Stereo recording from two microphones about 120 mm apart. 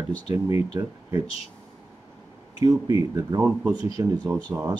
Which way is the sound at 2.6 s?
30° right (ahead or behind).